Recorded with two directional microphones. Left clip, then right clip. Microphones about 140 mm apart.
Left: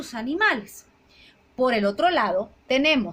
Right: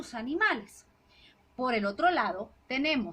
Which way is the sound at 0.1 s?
55° left (ahead or behind).